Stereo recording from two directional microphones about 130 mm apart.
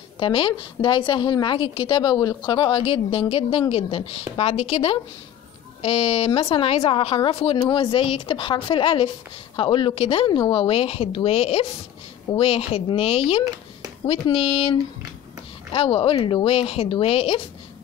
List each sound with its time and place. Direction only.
0.2 s a woman's voice: 40° left (ahead or behind)
7.5 s a woman's voice: 35° left (ahead or behind)